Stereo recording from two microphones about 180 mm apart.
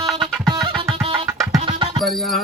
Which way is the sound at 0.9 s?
30° right (ahead or behind).